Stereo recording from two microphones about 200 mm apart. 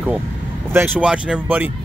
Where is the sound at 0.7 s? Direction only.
10° right (ahead or behind).